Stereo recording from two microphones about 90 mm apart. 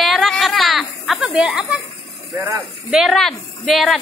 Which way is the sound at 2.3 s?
35° right (ahead or behind).